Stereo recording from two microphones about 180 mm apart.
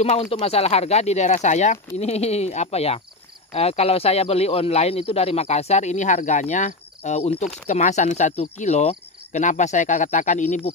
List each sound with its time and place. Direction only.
0.0 s speech: 35° left (ahead or behind)